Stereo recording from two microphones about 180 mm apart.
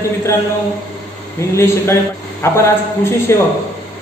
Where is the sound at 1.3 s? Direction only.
15° left (ahead or behind).